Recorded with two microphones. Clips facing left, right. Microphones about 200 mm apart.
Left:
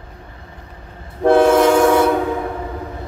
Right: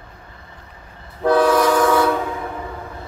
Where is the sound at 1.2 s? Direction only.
25° left (ahead or behind).